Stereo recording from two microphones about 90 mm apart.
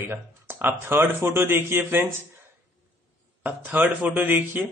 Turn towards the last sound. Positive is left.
turn(degrees=-20)  # may be behind; listen again after turning